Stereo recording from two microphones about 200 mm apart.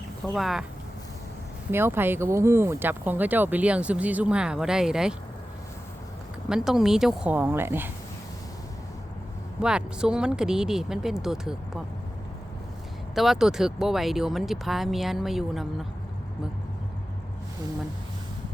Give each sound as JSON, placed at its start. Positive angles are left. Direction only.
{"t": 0.3, "sound": "speech", "side_deg": 0}
{"t": 1.7, "sound": "speech", "side_deg": -10}
{"t": 6.5, "sound": "speech", "side_deg": -5}
{"t": 9.6, "sound": "speech", "side_deg": -5}
{"t": 13.1, "sound": "speech", "side_deg": 0}